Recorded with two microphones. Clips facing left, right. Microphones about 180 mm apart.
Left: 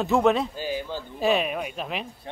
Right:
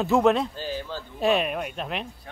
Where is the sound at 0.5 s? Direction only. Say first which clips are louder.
Left 2 dB; 10° left (ahead or behind).